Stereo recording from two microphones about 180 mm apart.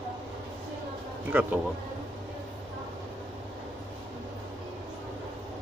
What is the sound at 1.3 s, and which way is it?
Speech, 10° right (ahead or behind).